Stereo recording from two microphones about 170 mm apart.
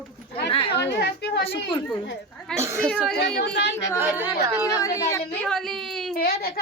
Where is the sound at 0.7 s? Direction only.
85° left.